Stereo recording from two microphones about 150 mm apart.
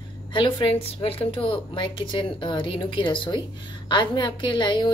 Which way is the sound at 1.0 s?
40° left (ahead or behind).